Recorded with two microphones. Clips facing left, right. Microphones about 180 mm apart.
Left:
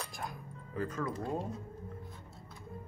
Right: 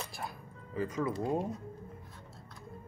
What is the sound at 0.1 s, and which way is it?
Music, 5° right (ahead or behind).